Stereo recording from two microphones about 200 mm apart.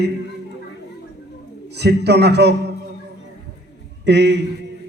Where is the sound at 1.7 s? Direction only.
55° right (ahead or behind).